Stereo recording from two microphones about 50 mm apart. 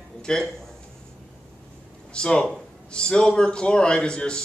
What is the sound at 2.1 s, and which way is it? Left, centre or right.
A man's voice, centre.